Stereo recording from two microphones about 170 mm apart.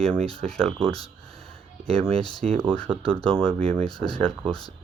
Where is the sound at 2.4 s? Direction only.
5° left (ahead or behind).